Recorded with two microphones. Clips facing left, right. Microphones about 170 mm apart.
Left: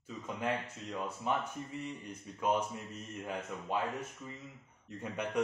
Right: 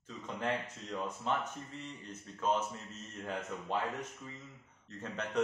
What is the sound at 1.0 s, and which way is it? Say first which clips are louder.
Speech: left 1 dB; 10° left (ahead or behind).